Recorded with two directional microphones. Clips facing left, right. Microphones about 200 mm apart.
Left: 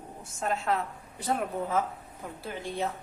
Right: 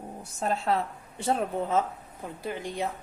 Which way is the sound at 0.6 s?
30° right (ahead or behind).